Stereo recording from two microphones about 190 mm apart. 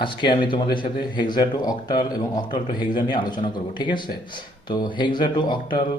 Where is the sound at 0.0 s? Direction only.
25° left (ahead or behind).